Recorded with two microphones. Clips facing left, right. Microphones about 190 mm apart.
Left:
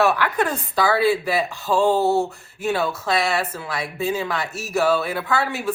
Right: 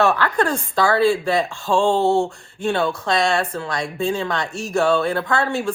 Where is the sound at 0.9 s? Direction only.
5° left (ahead or behind).